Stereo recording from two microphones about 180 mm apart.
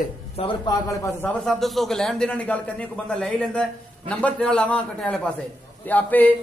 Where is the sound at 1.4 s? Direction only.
Centre (ahead or behind).